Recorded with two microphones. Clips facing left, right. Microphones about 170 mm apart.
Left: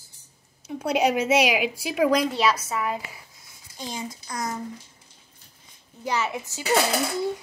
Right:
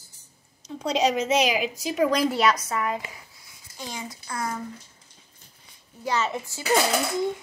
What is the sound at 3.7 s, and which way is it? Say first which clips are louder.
Speech: left 2 dB; 20° left (ahead or behind).